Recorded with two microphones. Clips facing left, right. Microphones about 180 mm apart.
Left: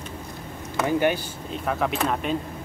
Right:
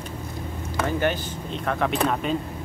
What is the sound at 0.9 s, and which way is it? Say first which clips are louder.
Speech: left 3 dB; 15° left (ahead or behind).